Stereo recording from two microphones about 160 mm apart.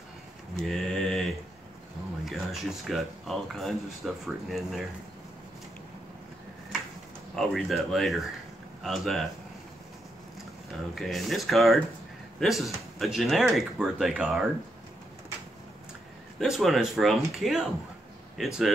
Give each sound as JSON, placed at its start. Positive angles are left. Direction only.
{"t": 0.6, "sound": "mantra", "side_deg": 0}
{"t": 2.2, "sound": "speech", "side_deg": 0}
{"t": 7.3, "sound": "speech", "side_deg": 0}
{"t": 11.0, "sound": "speech", "side_deg": 0}
{"t": 16.3, "sound": "speech", "side_deg": 0}